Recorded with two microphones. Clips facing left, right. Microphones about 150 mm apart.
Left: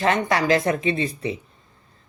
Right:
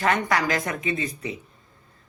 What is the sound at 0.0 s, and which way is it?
Speech, 30° left (ahead or behind).